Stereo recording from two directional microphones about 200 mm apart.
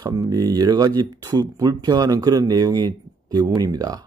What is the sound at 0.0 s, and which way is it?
Speech, 20° right (ahead or behind).